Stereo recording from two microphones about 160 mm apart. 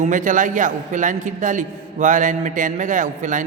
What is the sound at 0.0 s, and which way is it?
A man's voice, 55° right (ahead or behind).